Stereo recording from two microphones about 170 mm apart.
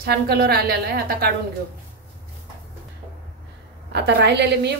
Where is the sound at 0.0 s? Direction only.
65° right (ahead or behind).